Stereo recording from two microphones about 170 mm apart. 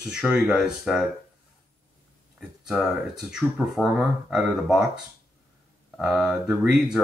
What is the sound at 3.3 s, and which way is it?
Speech, centre (ahead or behind).